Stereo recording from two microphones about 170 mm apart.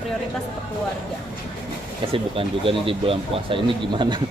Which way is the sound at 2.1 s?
30° right (ahead or behind).